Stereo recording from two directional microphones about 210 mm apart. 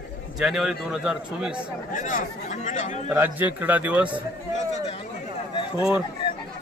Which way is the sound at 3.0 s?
10° right (ahead or behind).